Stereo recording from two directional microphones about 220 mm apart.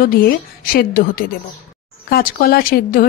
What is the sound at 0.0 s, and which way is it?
A woman's voice, 40° left (ahead or behind).